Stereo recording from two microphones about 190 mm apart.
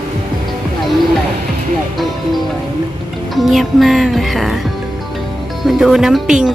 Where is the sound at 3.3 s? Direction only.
Centre (ahead or behind).